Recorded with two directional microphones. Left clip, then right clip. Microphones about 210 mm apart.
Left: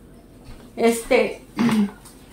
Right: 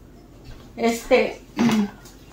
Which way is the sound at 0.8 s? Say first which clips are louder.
Left 4 dB; 55° left (ahead or behind).